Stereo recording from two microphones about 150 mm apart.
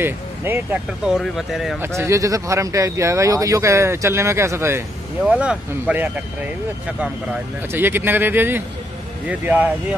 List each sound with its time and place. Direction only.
0.0 s speech: 15° right (ahead or behind)
1.0 s speech: 5° right (ahead or behind)
1.8 s speech: 20° right (ahead or behind)
5.2 s speech: 5° right (ahead or behind)
7.7 s speech: 15° right (ahead or behind)